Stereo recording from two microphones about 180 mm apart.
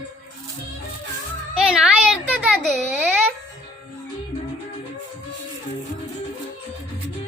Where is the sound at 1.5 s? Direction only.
5° right (ahead or behind).